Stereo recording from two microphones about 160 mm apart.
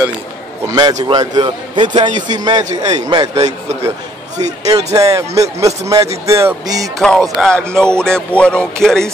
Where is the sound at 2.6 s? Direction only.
45° right (ahead or behind).